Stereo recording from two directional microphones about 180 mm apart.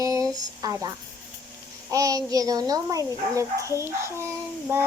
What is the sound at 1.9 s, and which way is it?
Child singing, 20° right (ahead or behind).